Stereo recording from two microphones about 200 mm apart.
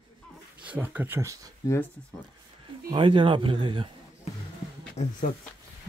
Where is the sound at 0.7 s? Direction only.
10° right (ahead or behind).